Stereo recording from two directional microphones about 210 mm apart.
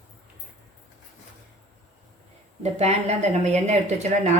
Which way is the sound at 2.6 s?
30° right (ahead or behind).